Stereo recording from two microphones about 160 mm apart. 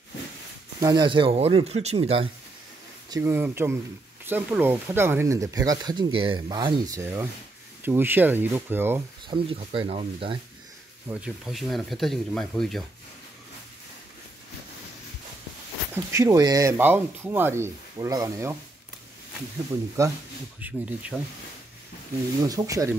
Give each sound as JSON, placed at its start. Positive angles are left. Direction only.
{"t": 0.7, "sound": "speech", "side_deg": -25}
{"t": 3.1, "sound": "speech", "side_deg": -15}
{"t": 9.3, "sound": "speech", "side_deg": -35}
{"t": 11.1, "sound": "speech", "side_deg": -5}
{"t": 15.9, "sound": "speech", "side_deg": -20}
{"t": 20.0, "sound": "speech", "side_deg": -20}
{"t": 22.4, "sound": "speech", "side_deg": -20}